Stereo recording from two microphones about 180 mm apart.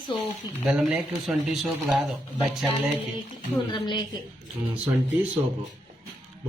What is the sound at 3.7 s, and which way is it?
Speech, 25° left (ahead or behind).